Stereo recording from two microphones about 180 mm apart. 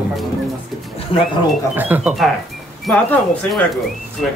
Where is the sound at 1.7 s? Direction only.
10° right (ahead or behind).